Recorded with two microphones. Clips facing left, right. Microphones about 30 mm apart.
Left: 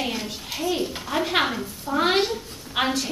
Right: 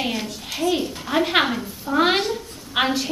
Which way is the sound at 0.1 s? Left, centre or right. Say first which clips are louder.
Right 2 dB; centre.